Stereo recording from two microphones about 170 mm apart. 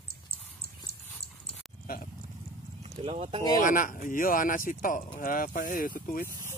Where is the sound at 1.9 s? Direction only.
60° left (ahead or behind).